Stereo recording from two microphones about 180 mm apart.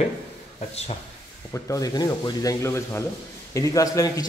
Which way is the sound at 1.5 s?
20° left (ahead or behind).